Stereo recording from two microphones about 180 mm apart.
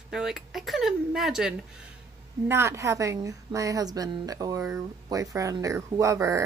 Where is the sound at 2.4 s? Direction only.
15° right (ahead or behind).